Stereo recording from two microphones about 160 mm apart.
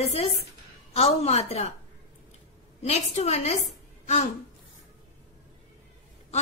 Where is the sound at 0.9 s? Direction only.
40° left (ahead or behind).